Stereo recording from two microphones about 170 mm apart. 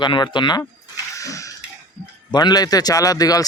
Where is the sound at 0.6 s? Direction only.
20° left (ahead or behind).